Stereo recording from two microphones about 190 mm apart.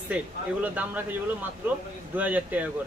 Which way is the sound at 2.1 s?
10° right (ahead or behind).